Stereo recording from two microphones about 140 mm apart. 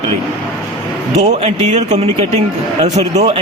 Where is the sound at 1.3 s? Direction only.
50° right (ahead or behind).